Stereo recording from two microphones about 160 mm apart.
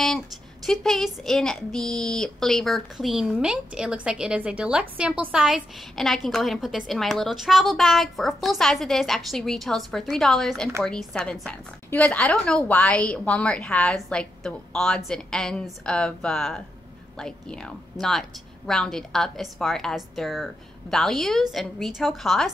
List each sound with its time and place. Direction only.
0.7 s speech: centre (ahead or behind)